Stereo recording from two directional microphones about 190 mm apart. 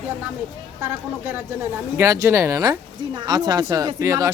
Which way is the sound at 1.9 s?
15° right (ahead or behind).